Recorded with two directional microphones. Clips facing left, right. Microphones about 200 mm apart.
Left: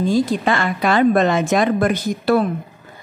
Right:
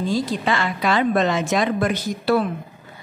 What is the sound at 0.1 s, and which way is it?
A woman's voice, 50° left (ahead or behind).